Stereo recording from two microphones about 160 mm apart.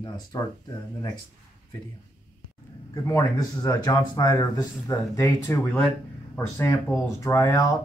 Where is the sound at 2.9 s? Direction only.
20° left (ahead or behind).